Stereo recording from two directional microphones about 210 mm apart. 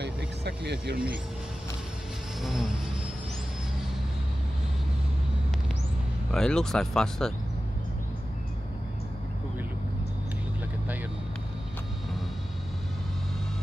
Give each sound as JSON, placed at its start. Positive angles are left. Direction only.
{"t": 0.0, "sound": "vehicle", "side_deg": -50}
{"t": 6.3, "sound": "speech", "side_deg": 5}